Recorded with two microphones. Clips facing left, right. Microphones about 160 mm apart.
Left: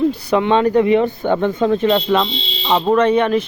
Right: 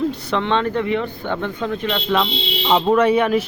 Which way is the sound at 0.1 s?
10° left (ahead or behind).